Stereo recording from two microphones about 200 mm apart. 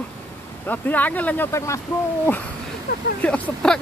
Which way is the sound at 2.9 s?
45° left (ahead or behind).